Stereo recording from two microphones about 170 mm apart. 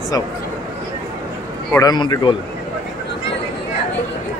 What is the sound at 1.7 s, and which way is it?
Speech, 25° left (ahead or behind).